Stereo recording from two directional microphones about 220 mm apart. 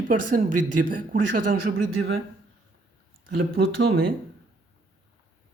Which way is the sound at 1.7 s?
65° right (ahead or behind).